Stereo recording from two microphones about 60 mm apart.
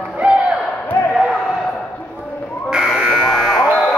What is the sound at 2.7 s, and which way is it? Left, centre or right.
Buzzer, centre.